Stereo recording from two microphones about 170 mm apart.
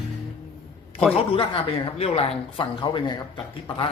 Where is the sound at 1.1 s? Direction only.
30° left (ahead or behind).